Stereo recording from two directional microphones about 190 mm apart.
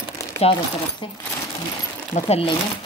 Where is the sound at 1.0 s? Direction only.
25° left (ahead or behind).